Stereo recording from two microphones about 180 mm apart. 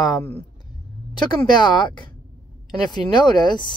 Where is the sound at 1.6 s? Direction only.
25° left (ahead or behind).